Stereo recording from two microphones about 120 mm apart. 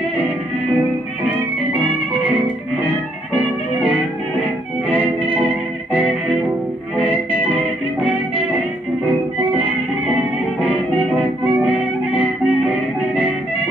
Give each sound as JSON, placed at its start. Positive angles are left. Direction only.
{"t": 3.3, "sound": "music", "side_deg": -15}
{"t": 7.0, "sound": "music", "side_deg": -10}
{"t": 11.1, "sound": "music", "side_deg": -15}